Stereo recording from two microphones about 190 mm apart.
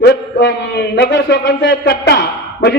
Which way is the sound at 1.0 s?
65° left (ahead or behind).